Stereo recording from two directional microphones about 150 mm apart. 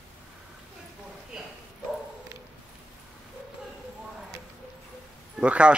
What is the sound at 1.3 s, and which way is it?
Bow-wow, 5° right (ahead or behind).